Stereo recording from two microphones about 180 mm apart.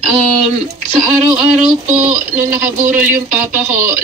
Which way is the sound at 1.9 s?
40° right (ahead or behind).